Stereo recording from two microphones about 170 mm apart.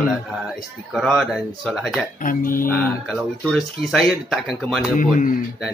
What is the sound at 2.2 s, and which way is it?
Speech, 55° left (ahead or behind).